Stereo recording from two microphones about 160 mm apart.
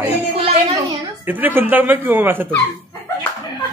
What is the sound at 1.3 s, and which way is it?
Speech, 10° right (ahead or behind).